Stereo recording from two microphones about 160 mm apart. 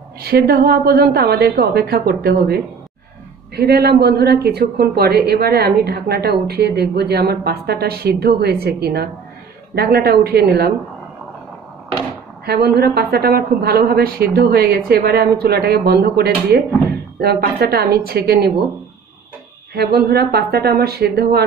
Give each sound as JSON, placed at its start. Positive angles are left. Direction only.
{"t": 0.2, "sound": "a woman's voice", "side_deg": -75}
{"t": 12.4, "sound": "a woman's voice", "side_deg": -80}
{"t": 19.7, "sound": "a woman's voice", "side_deg": -80}